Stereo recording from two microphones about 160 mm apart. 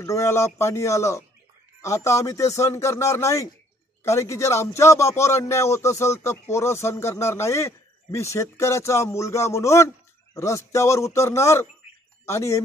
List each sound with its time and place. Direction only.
0.0 s a man's voice: 20° left (ahead or behind)